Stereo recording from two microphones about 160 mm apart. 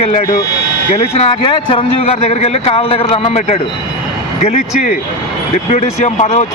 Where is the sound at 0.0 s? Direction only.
50° left (ahead or behind).